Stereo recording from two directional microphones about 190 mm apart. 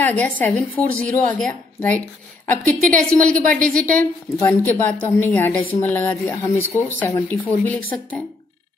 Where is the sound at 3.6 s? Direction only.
45° right (ahead or behind).